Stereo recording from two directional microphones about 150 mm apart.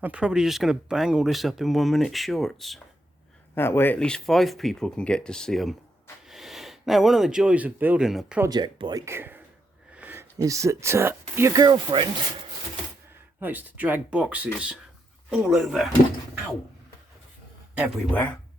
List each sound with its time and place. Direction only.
0.0 s speech: 5° right (ahead or behind)
3.5 s speech: 15° left (ahead or behind); by 8.4 s centre (ahead or behind)
8.4 s speech: 30° right (ahead or behind)
13.4 s speech: 10° right (ahead or behind)
18.1 s speech: 10° left (ahead or behind)